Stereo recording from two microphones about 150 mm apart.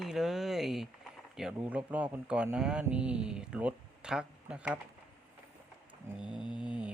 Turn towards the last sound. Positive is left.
turn(degrees=-5)  # may be behind; listen again after turning